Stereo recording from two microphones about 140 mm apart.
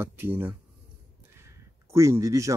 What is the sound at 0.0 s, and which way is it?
Speech, 15° right (ahead or behind).